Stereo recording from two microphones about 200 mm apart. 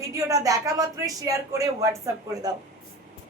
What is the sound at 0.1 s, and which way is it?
A woman's voice, 15° right (ahead or behind).